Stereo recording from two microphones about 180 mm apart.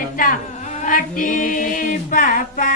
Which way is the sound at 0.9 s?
45° left (ahead or behind).